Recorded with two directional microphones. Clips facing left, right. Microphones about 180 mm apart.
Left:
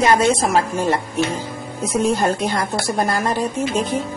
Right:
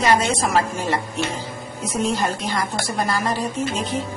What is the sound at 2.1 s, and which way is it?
A woman's voice, 55° left (ahead or behind).